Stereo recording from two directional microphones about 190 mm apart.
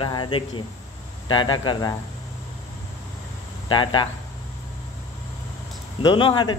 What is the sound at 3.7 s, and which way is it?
Speech, 25° left (ahead or behind).